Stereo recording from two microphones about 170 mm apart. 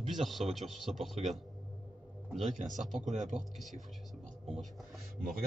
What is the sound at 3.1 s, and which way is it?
Speech, 45° right (ahead or behind).